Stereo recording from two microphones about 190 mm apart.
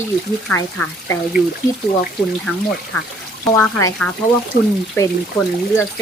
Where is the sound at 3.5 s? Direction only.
10° left (ahead or behind).